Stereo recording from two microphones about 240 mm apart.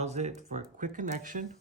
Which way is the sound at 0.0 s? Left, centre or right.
Right.